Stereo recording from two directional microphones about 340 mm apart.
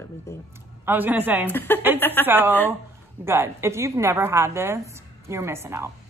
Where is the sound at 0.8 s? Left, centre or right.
Centre.